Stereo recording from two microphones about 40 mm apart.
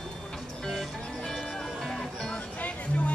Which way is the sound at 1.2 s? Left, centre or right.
Centre.